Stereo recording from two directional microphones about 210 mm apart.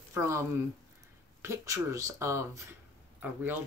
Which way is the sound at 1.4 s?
15° right (ahead or behind).